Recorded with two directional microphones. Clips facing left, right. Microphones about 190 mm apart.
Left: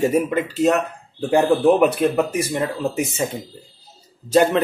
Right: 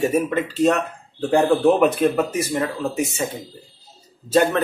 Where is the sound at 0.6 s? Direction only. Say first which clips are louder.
Even; 5° left (ahead or behind).